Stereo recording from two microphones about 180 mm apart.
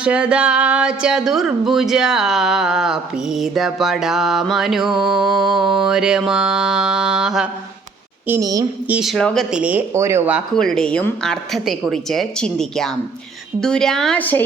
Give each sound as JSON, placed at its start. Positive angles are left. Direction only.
{"t": 0.0, "sound": "music", "side_deg": -5}
{"t": 8.3, "sound": "a woman's voice", "side_deg": -20}
{"t": 8.9, "sound": "speech", "side_deg": 0}
{"t": 10.5, "sound": "music", "side_deg": 5}